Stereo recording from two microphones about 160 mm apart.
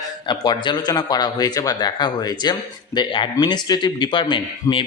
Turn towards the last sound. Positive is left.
turn(degrees=30)  # may be behind; listen again after turning